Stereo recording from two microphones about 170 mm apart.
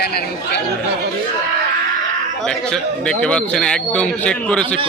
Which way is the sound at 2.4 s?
5° left (ahead or behind).